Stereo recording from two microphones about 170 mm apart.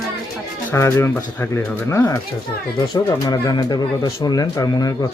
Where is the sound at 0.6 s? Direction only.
15° left (ahead or behind).